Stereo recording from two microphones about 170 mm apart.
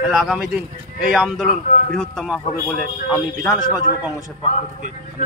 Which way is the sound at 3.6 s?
25° left (ahead or behind).